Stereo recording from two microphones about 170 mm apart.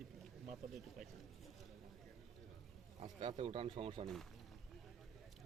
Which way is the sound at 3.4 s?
35° right (ahead or behind).